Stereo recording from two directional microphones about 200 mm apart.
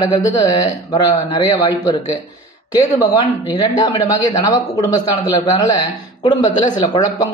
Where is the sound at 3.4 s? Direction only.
20° left (ahead or behind).